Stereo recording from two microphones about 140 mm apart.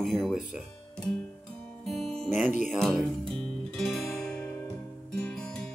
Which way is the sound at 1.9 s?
Centre (ahead or behind).